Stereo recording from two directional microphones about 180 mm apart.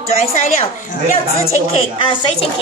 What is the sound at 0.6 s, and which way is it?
Speech, 45° left (ahead or behind).